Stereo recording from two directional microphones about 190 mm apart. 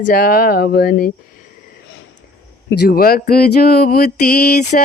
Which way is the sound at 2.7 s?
55° left (ahead or behind).